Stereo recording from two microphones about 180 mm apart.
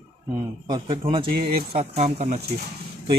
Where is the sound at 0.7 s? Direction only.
30° right (ahead or behind).